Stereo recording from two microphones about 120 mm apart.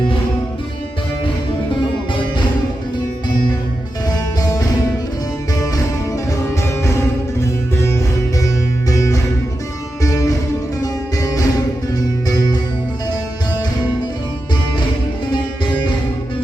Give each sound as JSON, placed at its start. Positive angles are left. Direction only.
{"t": 8.9, "sound": "music", "side_deg": 25}